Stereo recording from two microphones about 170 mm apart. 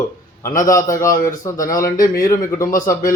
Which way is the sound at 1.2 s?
20° left (ahead or behind).